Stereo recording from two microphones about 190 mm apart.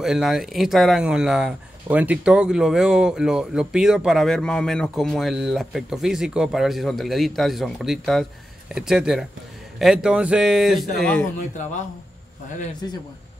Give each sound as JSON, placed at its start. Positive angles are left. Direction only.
{"t": 0.0, "sound": "speech", "side_deg": 0}
{"t": 11.3, "sound": "speech", "side_deg": 40}
{"t": 12.8, "sound": "a man's voice", "side_deg": 20}